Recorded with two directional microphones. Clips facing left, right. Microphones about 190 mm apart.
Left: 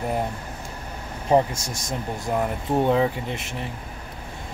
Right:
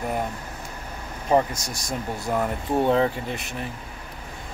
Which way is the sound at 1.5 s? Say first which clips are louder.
Even; 25° left (ahead or behind).